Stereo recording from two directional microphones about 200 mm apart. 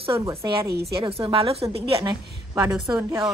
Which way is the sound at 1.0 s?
30° right (ahead or behind).